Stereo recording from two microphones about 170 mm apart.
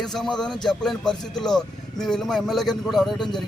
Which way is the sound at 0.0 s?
Centre (ahead or behind).